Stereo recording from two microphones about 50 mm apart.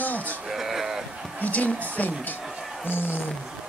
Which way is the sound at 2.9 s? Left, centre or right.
Left.